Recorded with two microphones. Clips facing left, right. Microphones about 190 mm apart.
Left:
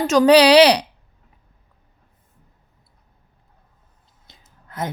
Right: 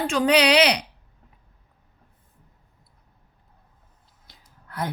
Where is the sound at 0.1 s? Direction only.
35° left (ahead or behind).